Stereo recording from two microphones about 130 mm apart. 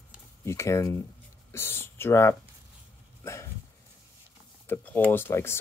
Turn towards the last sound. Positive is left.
turn(degrees=20)  # may be behind; listen again after turning